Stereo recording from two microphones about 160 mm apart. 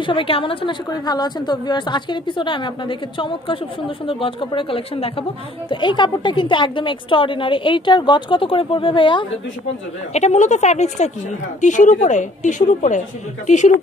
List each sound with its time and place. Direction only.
0.0 s a woman's voice: 35° left (ahead or behind)
10.1 s a woman's voice: 45° left (ahead or behind)